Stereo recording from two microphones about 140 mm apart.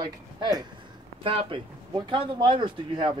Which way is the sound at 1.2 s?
40° right (ahead or behind).